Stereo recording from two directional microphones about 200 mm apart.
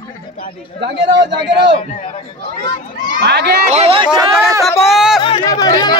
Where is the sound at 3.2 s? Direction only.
55° right (ahead or behind).